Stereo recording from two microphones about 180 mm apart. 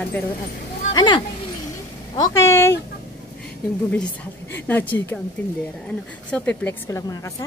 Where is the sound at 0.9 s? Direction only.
25° left (ahead or behind).